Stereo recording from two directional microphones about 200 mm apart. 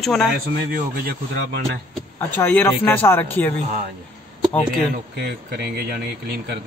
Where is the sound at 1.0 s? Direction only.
55° right (ahead or behind).